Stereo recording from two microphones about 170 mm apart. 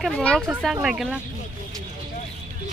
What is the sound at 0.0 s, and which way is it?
Speech, 5° left (ahead or behind).